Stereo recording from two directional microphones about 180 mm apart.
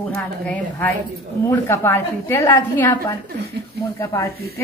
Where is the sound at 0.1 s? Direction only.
10° left (ahead or behind).